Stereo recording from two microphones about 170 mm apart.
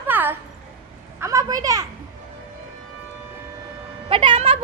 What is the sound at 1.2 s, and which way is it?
Speech, 20° right (ahead or behind).